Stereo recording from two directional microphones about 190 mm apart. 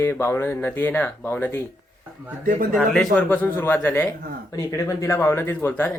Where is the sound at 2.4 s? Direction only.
45° right (ahead or behind).